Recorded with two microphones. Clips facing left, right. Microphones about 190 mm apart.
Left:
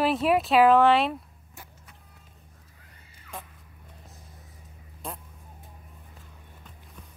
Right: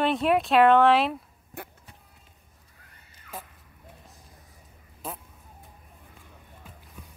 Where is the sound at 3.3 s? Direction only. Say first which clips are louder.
Even; 50° right (ahead or behind).